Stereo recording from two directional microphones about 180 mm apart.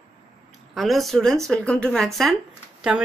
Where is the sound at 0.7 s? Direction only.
Centre (ahead or behind).